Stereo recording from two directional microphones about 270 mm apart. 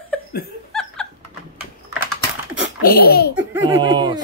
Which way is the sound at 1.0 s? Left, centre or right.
Centre.